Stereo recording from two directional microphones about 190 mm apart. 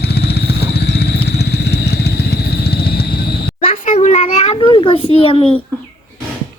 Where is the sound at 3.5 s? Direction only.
30° left (ahead or behind).